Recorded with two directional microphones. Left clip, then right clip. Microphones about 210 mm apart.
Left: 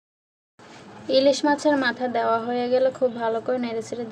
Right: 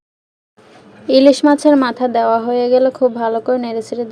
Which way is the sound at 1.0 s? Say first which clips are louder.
Right 9 dB; 40° right (ahead or behind).